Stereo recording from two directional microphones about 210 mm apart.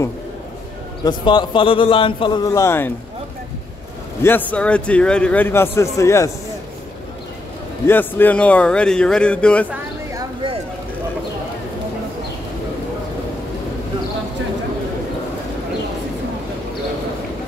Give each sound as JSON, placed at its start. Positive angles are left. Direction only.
{"t": 1.0, "sound": "a man's voice", "side_deg": 20}
{"t": 4.2, "sound": "a man's voice", "side_deg": 10}
{"t": 7.8, "sound": "speech", "side_deg": 10}